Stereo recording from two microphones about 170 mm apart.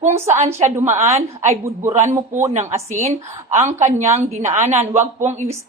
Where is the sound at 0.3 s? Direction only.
40° right (ahead or behind).